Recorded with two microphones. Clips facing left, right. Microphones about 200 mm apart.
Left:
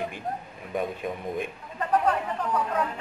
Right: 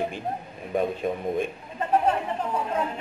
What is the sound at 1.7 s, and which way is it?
A man's voice, 25° right (ahead or behind).